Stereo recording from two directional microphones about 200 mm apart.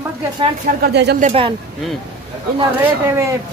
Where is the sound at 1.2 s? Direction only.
30° right (ahead or behind).